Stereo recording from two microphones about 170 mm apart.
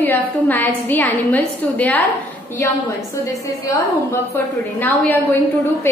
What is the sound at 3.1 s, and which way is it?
A woman's voice, 20° left (ahead or behind).